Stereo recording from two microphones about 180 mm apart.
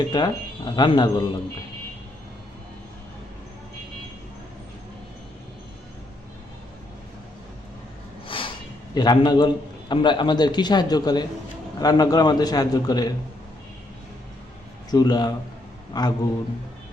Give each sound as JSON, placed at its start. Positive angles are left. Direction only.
{"t": 0.1, "sound": "a man's voice", "side_deg": 25}
{"t": 8.3, "sound": "snort", "side_deg": 30}
{"t": 9.0, "sound": "a man's voice", "side_deg": 20}
{"t": 14.8, "sound": "a man's voice", "side_deg": 20}